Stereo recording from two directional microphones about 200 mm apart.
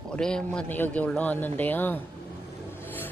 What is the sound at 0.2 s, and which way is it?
Speech, 5° left (ahead or behind).